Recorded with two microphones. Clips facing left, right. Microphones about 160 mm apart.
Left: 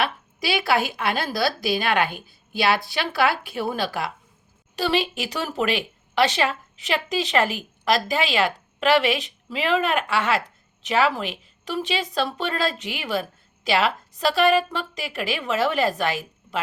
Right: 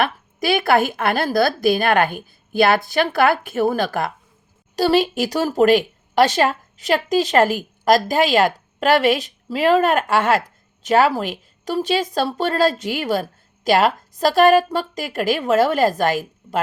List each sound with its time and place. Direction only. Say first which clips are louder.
0.0 s speech: right 5 dB; 50° right (ahead or behind)